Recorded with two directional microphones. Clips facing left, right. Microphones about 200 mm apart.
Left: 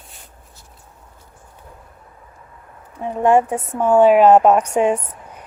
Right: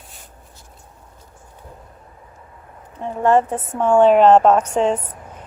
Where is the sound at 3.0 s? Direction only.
15° left (ahead or behind).